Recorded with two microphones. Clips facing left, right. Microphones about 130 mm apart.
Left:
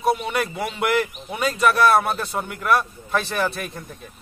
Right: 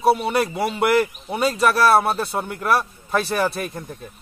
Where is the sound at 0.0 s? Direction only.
35° right (ahead or behind).